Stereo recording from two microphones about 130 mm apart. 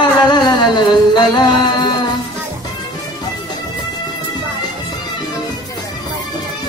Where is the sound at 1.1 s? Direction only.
35° left (ahead or behind).